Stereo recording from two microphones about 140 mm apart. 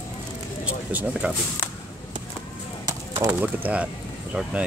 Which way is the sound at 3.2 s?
20° right (ahead or behind).